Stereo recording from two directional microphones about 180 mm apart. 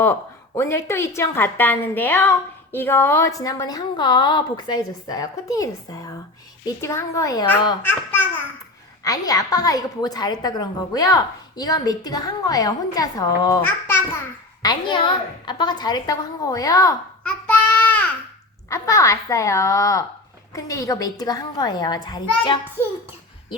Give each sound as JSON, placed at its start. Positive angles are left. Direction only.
{"t": 0.0, "sound": "a woman's voice", "side_deg": 15}
{"t": 14.6, "sound": "a woman's voice", "side_deg": 25}
{"t": 17.2, "sound": "child singing", "side_deg": 10}
{"t": 18.7, "sound": "a woman's voice", "side_deg": 15}